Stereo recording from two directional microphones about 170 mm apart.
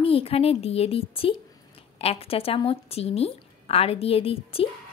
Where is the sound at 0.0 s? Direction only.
35° left (ahead or behind).